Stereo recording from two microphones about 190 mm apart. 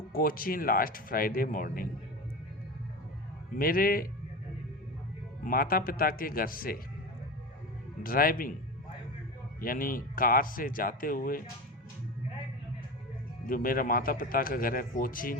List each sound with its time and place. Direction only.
0.1 s speech: 50° left (ahead or behind)
3.6 s speech: 50° left (ahead or behind)
5.5 s speech: 50° left (ahead or behind)
8.0 s speech: 50° left (ahead or behind)
9.6 s speech: 45° left (ahead or behind)
13.5 s speech: 50° left (ahead or behind)